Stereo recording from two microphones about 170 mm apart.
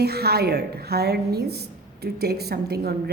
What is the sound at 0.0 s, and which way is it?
A woman's voice, 70° right (ahead or behind).